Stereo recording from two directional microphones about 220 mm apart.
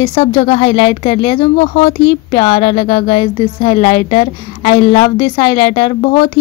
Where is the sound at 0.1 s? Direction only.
30° left (ahead or behind).